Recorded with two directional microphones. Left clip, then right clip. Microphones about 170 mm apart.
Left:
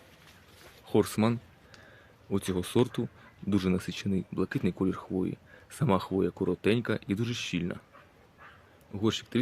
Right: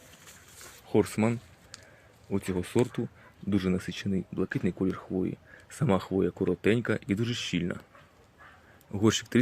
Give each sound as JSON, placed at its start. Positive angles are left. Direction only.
{"t": 0.9, "sound": "speech", "side_deg": 0}
{"t": 8.9, "sound": "a man's voice", "side_deg": -40}